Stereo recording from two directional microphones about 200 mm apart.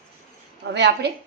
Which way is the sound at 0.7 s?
55° right (ahead or behind).